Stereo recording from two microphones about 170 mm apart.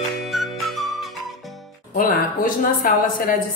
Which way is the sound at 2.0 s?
55° left (ahead or behind).